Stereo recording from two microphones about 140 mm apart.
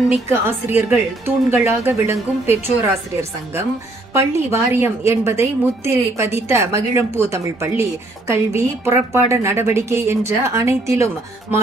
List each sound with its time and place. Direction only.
0.1 s speech: 15° right (ahead or behind)
4.1 s a woman's voice: 20° right (ahead or behind)